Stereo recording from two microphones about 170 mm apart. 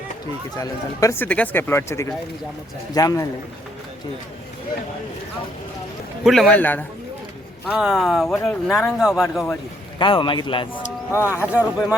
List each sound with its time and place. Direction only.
0.5 s speech: 20° left (ahead or behind)
6.2 s speech: centre (ahead or behind)
7.7 s speech: 5° right (ahead or behind)
10.0 s speech: 30° left (ahead or behind)
11.3 s speech: 10° right (ahead or behind)